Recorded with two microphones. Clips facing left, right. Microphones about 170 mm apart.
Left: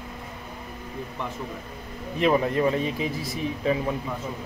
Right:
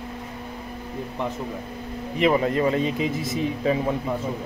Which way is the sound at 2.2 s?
20° right (ahead or behind).